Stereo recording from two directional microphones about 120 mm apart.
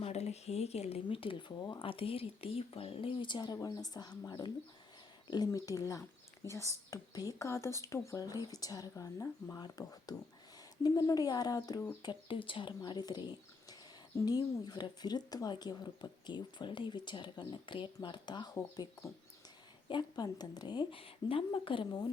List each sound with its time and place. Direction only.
0.0 s a sound: 65° left (ahead or behind)
1.0 s speech: 45° left (ahead or behind)
12.0 s speech: 45° left (ahead or behind)
19.9 s speech: 35° left (ahead or behind)
21.0 s speech: 50° left (ahead or behind)